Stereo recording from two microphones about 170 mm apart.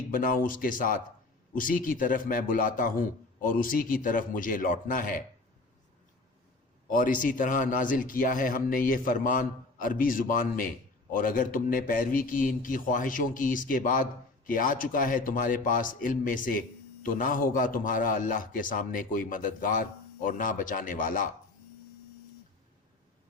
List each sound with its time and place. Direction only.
0.1 s a man's voice: 55° left (ahead or behind)
6.9 s a man's voice: 50° left (ahead or behind)